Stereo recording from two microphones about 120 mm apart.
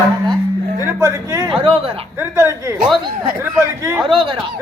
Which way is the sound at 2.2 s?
25° right (ahead or behind).